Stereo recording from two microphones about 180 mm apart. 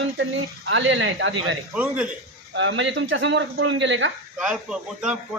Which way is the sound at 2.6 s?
90° right.